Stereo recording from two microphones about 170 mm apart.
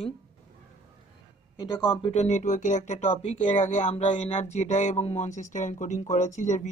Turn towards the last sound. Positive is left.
turn(degrees=45)  # may be behind; listen again after turning